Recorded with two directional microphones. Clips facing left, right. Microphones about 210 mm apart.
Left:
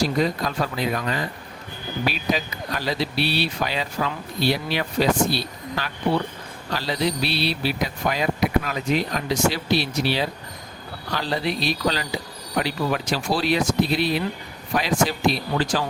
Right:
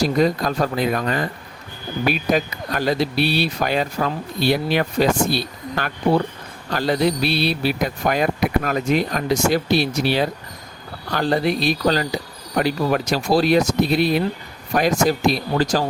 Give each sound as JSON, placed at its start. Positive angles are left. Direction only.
{"t": 0.0, "sound": "speech", "side_deg": -45}